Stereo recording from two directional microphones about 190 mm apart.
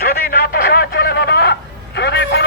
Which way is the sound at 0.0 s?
55° left (ahead or behind).